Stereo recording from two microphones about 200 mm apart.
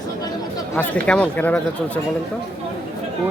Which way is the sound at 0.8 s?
5° left (ahead or behind).